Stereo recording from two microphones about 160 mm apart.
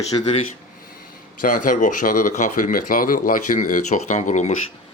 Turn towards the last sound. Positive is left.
turn(degrees=50)  # may be behind; listen again after turning